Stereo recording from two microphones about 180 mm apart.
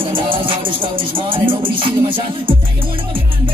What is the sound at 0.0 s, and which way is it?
Music, 30° right (ahead or behind).